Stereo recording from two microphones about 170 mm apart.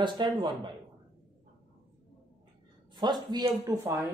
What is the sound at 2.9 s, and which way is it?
Speech, 25° right (ahead or behind).